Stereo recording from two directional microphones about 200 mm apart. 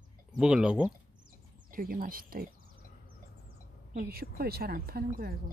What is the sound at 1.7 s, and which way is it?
Speech, 45° right (ahead or behind).